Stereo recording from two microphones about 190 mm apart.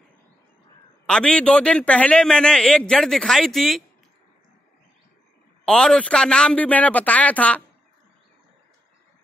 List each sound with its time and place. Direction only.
1.0 s a man's voice: 5° left (ahead or behind)
5.7 s a man's voice: 5° left (ahead or behind)